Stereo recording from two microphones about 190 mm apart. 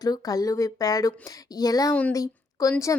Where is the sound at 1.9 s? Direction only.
10° left (ahead or behind).